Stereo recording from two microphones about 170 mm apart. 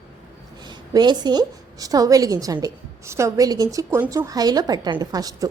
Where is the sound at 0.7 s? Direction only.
25° right (ahead or behind).